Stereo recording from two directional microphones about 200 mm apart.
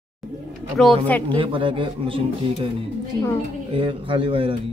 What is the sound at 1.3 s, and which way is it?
Speech, 25° right (ahead or behind).